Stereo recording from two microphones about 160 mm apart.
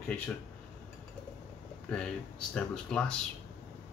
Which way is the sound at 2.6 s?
5° left (ahead or behind).